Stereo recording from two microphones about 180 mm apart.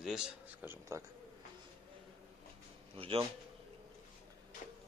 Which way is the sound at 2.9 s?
30° right (ahead or behind).